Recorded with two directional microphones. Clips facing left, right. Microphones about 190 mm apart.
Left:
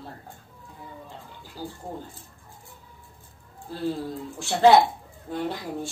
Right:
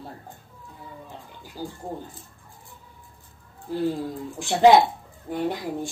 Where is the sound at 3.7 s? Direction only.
15° right (ahead or behind).